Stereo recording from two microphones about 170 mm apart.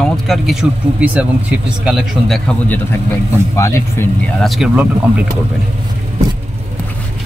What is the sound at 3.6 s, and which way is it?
Speech, 15° left (ahead or behind).